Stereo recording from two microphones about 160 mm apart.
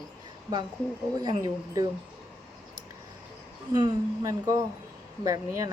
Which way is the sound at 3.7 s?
25° right (ahead or behind).